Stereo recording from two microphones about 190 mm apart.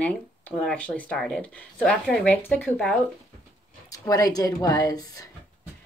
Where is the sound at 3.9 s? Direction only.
20° left (ahead or behind).